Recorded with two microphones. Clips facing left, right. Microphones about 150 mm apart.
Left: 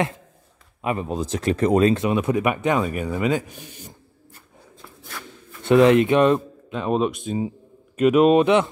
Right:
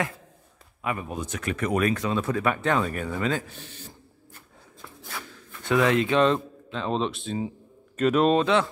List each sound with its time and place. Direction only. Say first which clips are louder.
0.8 s speech: left 6 dB; 25° left (ahead or behind)
5.7 s speech: left 7 dB; 20° left (ahead or behind)